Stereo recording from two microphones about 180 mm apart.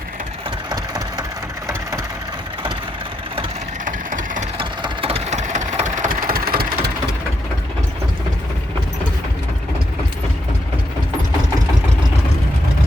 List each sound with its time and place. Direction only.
0.7 s engine: 20° right (ahead or behind)
3.8 s vehicle: 45° right (ahead or behind)
4.5 s engine: 30° right (ahead or behind); by 6.9 s 55° right (ahead or behind)